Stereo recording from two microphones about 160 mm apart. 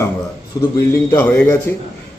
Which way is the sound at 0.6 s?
25° left (ahead or behind).